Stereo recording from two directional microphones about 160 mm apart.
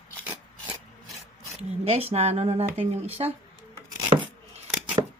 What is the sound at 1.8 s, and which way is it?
Speech, 40° right (ahead or behind).